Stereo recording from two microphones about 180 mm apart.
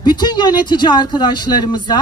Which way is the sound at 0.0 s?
25° left (ahead or behind).